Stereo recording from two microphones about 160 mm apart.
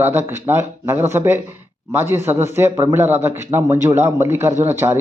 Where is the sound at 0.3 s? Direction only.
15° right (ahead or behind).